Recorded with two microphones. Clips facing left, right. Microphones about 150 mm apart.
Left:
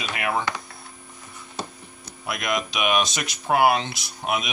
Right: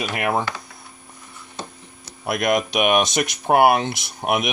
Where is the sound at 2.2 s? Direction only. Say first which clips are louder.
Right 7 dB; 55° right (ahead or behind).